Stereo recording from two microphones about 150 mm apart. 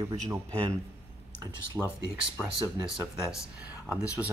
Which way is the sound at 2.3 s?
10° right (ahead or behind).